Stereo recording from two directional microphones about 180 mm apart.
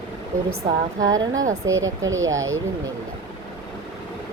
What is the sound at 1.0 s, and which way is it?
Speech, 20° right (ahead or behind).